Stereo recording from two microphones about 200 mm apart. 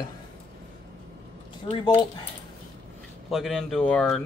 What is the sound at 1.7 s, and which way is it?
Speech, 30° left (ahead or behind).